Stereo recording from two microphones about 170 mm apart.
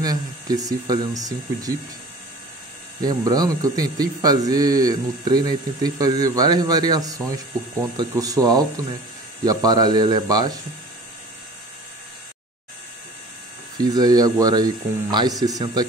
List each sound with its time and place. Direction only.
0.0 s speech: 20° right (ahead or behind)
3.0 s speech: 20° right (ahead or behind)
13.9 s speech: 25° right (ahead or behind)